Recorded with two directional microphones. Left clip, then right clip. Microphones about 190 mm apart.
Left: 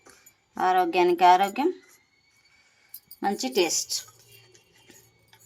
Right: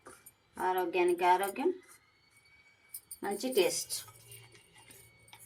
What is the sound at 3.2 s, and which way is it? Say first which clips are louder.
Speech: left 5 dB; 60° left (ahead or behind).